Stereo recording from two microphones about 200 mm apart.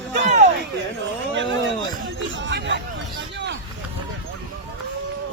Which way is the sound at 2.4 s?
65° right (ahead or behind).